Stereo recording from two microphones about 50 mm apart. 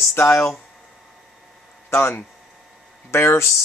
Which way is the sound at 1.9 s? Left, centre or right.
Left.